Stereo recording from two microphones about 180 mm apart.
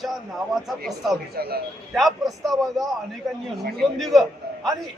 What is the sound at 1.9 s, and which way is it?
A man's voice, centre (ahead or behind).